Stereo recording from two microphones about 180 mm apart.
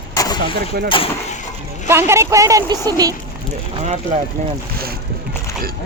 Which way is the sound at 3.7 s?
40° right (ahead or behind).